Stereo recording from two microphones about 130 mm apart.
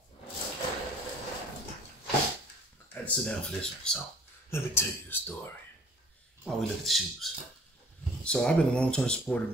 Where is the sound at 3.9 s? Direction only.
5° left (ahead or behind).